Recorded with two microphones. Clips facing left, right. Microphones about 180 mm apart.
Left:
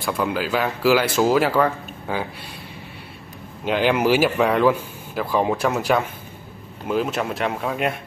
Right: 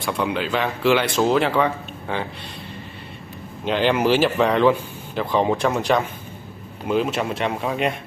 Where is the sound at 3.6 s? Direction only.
10° left (ahead or behind).